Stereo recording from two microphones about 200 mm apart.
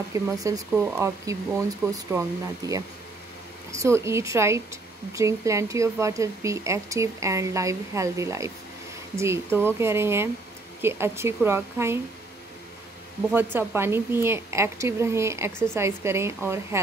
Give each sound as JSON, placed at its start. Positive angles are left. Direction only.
{"t": 0.1, "sound": "speech", "side_deg": -15}
{"t": 13.3, "sound": "speech", "side_deg": -10}